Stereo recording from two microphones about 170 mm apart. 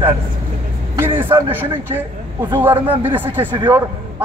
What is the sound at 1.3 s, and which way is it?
Speech, 30° right (ahead or behind).